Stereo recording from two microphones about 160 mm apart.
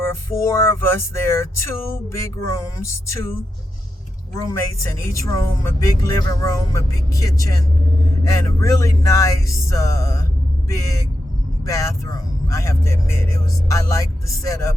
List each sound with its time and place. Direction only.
0.0 s speech: 15° left (ahead or behind)
4.4 s speech: 20° left (ahead or behind)